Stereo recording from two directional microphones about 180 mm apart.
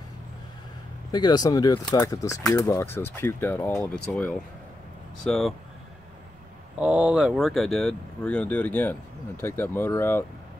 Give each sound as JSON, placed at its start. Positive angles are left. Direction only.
{"t": 1.1, "sound": "speech", "side_deg": 20}
{"t": 6.8, "sound": "speech", "side_deg": -5}